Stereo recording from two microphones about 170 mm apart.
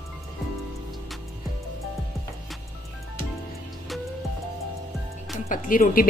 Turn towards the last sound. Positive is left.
turn(degrees=55)  # may be behind; listen again after turning